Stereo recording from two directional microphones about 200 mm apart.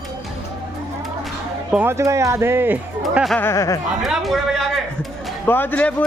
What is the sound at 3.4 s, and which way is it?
Speech, 15° left (ahead or behind).